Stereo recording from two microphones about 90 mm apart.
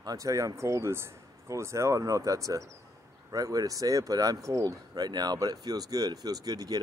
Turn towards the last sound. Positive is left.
turn(degrees=-45)  # may be behind; listen again after turning